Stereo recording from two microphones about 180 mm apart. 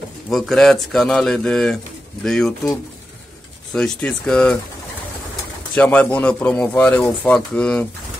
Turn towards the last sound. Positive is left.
turn(degrees=5)  # may be behind; listen again after turning